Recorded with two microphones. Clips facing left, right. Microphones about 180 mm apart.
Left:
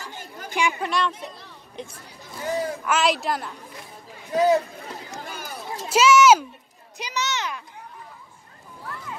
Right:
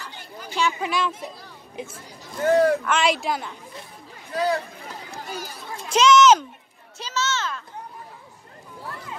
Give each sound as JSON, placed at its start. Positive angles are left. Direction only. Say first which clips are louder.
{"t": 0.0, "sound": "chatter", "louder": "left 1 dB", "side_deg": 45}
{"t": 0.7, "sound": "speech", "louder": "even", "side_deg": 0}
{"t": 2.4, "sound": "speech", "louder": "right 9 dB", "side_deg": -65}
{"t": 2.8, "sound": "speech", "louder": "even", "side_deg": 5}
{"t": 4.3, "sound": "speech", "louder": "left 5 dB", "side_deg": 20}
{"t": 5.2, "sound": "run", "louder": "right 3 dB", "side_deg": 55}
{"t": 5.9, "sound": "a child's voice", "louder": "even", "side_deg": 5}